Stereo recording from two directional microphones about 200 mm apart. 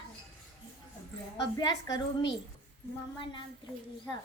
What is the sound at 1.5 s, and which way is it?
Speech, 20° left (ahead or behind).